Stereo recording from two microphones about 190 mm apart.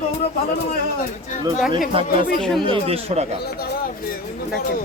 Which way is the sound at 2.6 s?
30° right (ahead or behind).